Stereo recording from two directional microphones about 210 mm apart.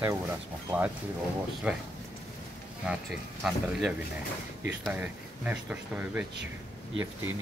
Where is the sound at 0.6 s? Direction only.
10° right (ahead or behind).